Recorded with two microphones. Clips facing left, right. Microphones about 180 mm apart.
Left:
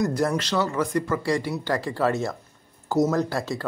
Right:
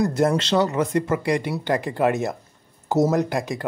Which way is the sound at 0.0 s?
25° right (ahead or behind).